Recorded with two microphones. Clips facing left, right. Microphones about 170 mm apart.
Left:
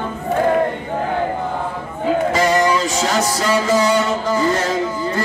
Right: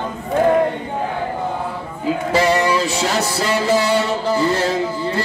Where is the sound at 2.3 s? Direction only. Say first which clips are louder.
Right 3 dB; 30° right (ahead or behind).